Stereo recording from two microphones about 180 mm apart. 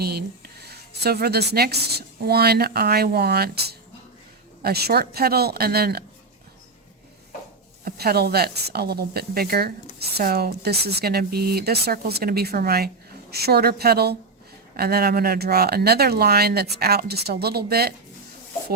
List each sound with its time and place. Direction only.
0.0 s a woman's voice: 60° right (ahead or behind)
7.9 s a woman's voice: 60° right (ahead or behind)